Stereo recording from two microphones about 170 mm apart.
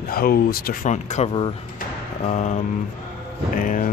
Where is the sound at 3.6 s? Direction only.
50° left (ahead or behind).